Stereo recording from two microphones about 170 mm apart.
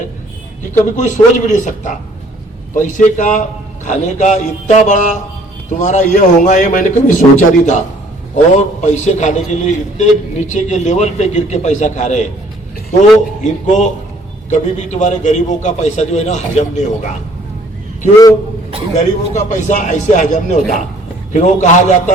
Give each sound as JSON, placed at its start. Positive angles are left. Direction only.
{"t": 0.9, "sound": "a man's voice", "side_deg": 45}
{"t": 18.9, "sound": "a man's voice", "side_deg": 45}